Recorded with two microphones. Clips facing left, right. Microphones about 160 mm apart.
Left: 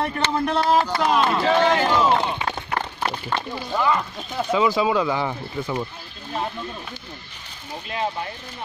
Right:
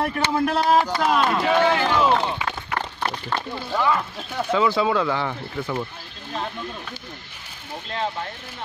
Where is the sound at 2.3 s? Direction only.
30° left (ahead or behind).